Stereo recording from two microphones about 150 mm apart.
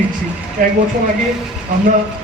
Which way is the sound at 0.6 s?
65° right (ahead or behind).